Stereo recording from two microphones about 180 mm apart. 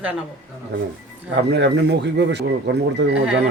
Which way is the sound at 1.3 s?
70° right (ahead or behind).